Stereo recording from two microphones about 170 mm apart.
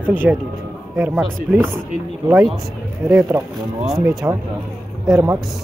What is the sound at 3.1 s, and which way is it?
Speech, 15° right (ahead or behind).